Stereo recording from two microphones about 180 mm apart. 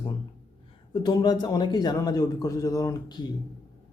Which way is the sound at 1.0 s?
20° left (ahead or behind).